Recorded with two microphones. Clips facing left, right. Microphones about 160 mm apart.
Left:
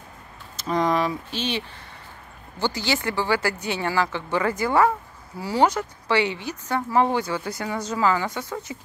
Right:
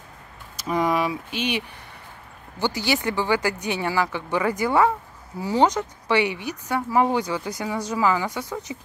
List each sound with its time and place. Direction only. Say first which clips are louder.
0.7 s speech: even; 10° right (ahead or behind)
2.6 s speech: right 1 dB; 15° right (ahead or behind)